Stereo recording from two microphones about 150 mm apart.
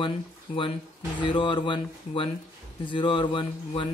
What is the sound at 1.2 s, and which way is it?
Speech, 35° left (ahead or behind).